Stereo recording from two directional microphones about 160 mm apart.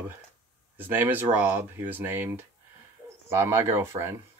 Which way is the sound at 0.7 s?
10° right (ahead or behind).